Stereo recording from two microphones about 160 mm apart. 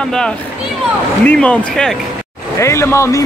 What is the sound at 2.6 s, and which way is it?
Speech, 15° left (ahead or behind).